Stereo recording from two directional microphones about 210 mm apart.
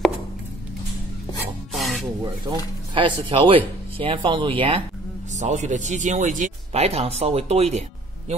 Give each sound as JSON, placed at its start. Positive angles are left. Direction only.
{"t": 1.7, "sound": "rub", "side_deg": 0}
{"t": 2.9, "sound": "speech", "side_deg": -25}